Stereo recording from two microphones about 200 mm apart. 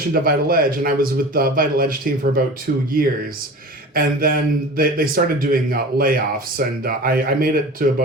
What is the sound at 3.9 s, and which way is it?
Speech, 45° right (ahead or behind).